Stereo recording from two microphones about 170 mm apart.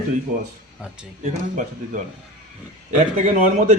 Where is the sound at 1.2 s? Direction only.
45° right (ahead or behind).